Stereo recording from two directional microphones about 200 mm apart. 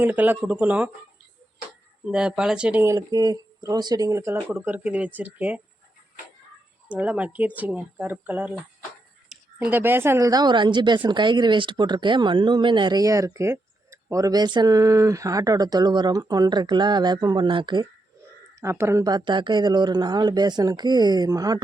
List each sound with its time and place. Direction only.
0.0 s speech: 10° right (ahead or behind)
2.0 s speech: 5° right (ahead or behind)
6.8 s speech: 5° right (ahead or behind); by 17.8 s 25° right (ahead or behind)
18.6 s speech: 15° right (ahead or behind)